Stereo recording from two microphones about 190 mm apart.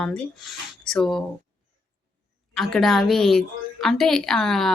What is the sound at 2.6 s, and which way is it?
Speech, centre (ahead or behind).